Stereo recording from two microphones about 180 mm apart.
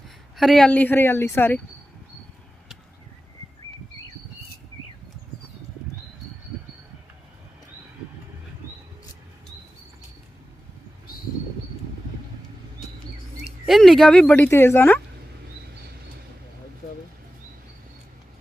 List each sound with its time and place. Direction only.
0.3 s speech: centre (ahead or behind)
13.7 s speech: centre (ahead or behind)